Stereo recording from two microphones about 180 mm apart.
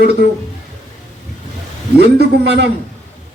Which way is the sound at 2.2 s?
70° right (ahead or behind).